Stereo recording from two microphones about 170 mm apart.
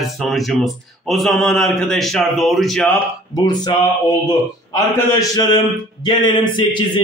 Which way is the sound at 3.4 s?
25° left (ahead or behind).